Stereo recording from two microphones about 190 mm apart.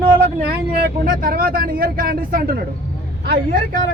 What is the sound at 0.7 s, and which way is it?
Speech, 50° right (ahead or behind).